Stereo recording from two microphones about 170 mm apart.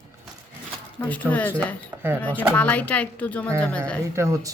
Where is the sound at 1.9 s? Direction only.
15° right (ahead or behind).